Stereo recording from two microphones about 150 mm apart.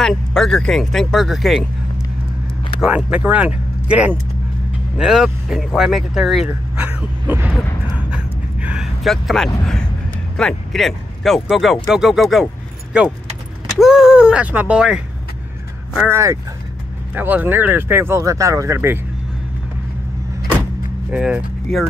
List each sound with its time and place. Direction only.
0.0 s speech: 5° left (ahead or behind)
2.8 s speech: 5° right (ahead or behind)
8.1 s a sound: 10° right (ahead or behind)
10.3 s speech: 5° left (ahead or behind)
16.1 s speech: 20° right (ahead or behind)
21.1 s speech: 10° right (ahead or behind)